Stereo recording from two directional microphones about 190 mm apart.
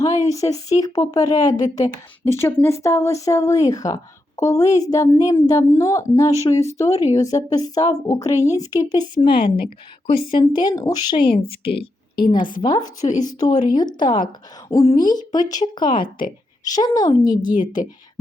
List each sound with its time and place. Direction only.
0.0 s speech: 20° left (ahead or behind)